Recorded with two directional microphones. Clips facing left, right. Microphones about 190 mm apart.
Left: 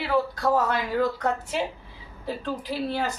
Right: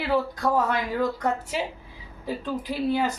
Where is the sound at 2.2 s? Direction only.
10° right (ahead or behind).